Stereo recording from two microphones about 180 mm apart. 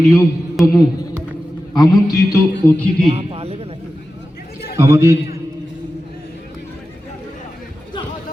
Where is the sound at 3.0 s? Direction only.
30° right (ahead or behind).